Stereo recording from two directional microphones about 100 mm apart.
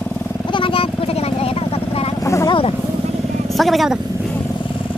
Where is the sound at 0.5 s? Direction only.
60° left (ahead or behind); by 2.1 s 80° left.